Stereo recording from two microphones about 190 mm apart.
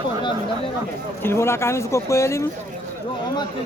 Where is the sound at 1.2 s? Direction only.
15° left (ahead or behind).